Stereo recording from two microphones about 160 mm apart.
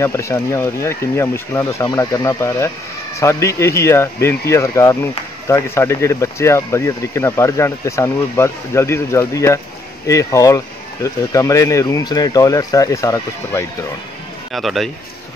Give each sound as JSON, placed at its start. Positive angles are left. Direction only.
{"t": 0.0, "sound": "speech", "side_deg": 20}
{"t": 14.5, "sound": "speech", "side_deg": 0}